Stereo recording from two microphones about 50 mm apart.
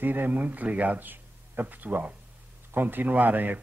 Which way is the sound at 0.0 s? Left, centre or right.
Right.